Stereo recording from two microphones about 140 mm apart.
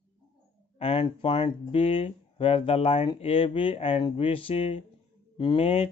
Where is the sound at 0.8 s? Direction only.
45° left (ahead or behind).